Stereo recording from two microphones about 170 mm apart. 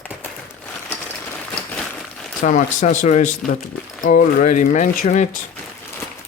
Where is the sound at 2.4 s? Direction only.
55° left (ahead or behind).